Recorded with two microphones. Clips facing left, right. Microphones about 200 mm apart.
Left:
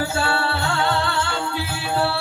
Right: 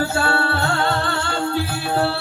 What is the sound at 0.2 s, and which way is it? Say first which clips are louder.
Music: right 2 dB; 50° right (ahead or behind).